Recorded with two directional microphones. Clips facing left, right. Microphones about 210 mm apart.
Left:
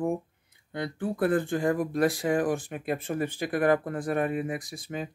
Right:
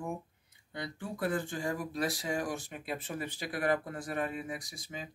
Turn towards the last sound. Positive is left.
turn(degrees=55)  # may be behind; listen again after turning